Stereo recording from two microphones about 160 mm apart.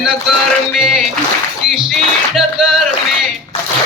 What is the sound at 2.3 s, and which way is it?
Speech, 5° right (ahead or behind).